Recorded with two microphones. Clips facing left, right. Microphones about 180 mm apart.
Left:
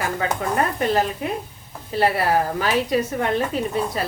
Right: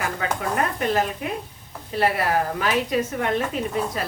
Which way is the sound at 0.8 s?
35° left (ahead or behind).